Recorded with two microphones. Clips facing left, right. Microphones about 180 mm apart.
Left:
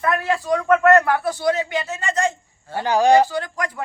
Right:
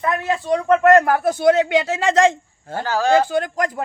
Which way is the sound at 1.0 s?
45° right (ahead or behind).